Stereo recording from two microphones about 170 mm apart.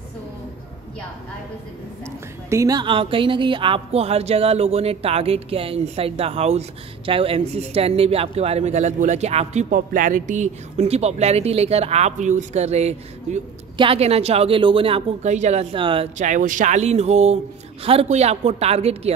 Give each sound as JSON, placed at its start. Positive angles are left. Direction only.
{"t": 2.0, "sound": "speech", "side_deg": -20}
{"t": 16.2, "sound": "speech", "side_deg": -45}